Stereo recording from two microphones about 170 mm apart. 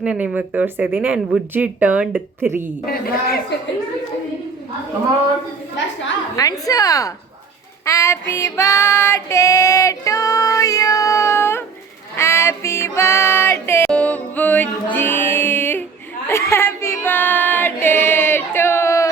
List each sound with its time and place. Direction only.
0.0 s speech: 5° right (ahead or behind)
2.8 s speech: 60° left (ahead or behind)
6.3 s a woman's voice: 20° left (ahead or behind)
7.9 s female singing: 15° left (ahead or behind)
12.1 s music: 15° left (ahead or behind)
16.3 s female singing: 15° left (ahead or behind)